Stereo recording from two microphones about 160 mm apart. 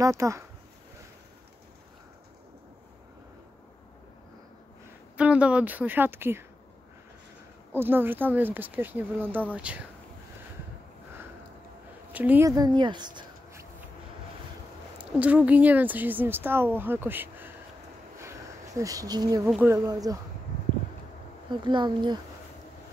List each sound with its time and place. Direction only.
0.0 s speech: 20° right (ahead or behind)
5.1 s speech: 5° right (ahead or behind)
7.7 s speech: 15° right (ahead or behind)
12.1 s speech: 10° right (ahead or behind)
12.4 s speech: 25° right (ahead or behind)
15.0 s speech: 10° right (ahead or behind)
18.8 s speech: 20° right (ahead or behind)
19.4 s speech: 10° right (ahead or behind)
19.9 s speech: 20° right (ahead or behind)
21.5 s speech: 30° right (ahead or behind)